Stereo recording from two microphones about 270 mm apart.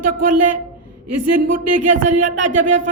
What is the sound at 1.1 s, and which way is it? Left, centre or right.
Speech, right.